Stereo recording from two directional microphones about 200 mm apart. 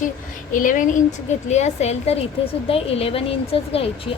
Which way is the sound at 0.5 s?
40° left (ahead or behind).